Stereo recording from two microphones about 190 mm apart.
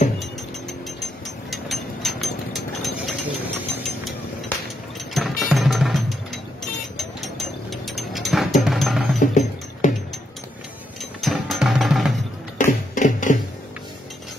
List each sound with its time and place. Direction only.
0.2 s mechanisms: centre (ahead or behind)
5.1 s music: centre (ahead or behind)
9.2 s music: 40° left (ahead or behind)
11.0 s music: centre (ahead or behind)
12.6 s music: 40° left (ahead or behind)